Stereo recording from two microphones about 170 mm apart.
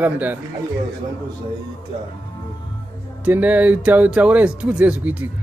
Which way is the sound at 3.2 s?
10° right (ahead or behind).